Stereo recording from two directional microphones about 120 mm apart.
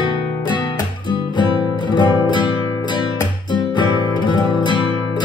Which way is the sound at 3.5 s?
40° left (ahead or behind).